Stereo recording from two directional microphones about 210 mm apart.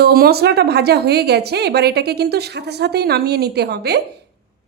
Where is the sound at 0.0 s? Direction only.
50° right (ahead or behind).